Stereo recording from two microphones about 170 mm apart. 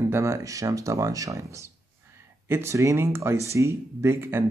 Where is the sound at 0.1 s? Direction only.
15° right (ahead or behind).